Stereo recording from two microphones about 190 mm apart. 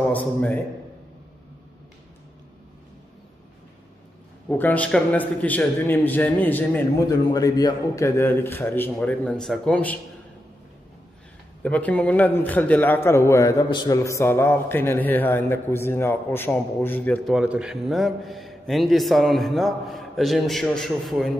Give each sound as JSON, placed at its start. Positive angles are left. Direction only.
{"t": 0.0, "sound": "a man's voice", "side_deg": 10}
{"t": 4.5, "sound": "a man's voice", "side_deg": 10}
{"t": 11.6, "sound": "a man's voice", "side_deg": 10}
{"t": 17.4, "sound": "a man's voice", "side_deg": -5}